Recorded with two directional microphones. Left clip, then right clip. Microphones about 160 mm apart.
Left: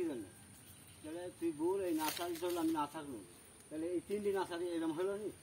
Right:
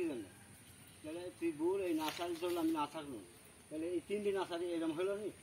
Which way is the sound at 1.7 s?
20° left (ahead or behind).